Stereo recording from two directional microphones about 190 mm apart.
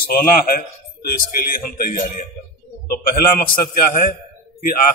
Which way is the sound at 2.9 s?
50° left (ahead or behind).